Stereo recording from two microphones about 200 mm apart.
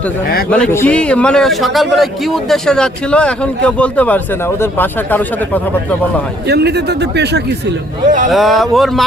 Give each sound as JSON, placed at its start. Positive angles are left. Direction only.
{"t": 0.5, "sound": "a man's voice", "side_deg": 10}
{"t": 6.5, "sound": "speech", "side_deg": -55}
{"t": 8.3, "sound": "a man's voice", "side_deg": 0}